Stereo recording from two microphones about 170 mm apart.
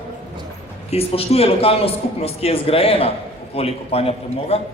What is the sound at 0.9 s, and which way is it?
A man's voice, 35° left (ahead or behind).